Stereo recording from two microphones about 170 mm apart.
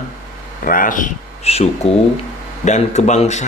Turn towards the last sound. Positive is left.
turn(degrees=45)  # may be behind; listen again after turning